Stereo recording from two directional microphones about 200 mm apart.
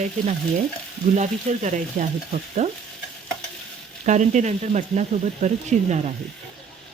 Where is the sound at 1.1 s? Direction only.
35° right (ahead or behind).